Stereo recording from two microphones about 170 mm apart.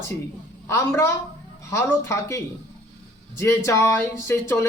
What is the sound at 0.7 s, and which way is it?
Speech, 15° left (ahead or behind).